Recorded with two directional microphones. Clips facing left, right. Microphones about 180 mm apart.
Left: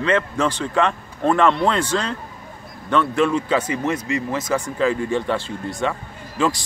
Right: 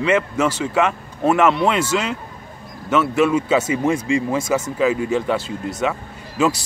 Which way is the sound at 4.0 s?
30° right (ahead or behind).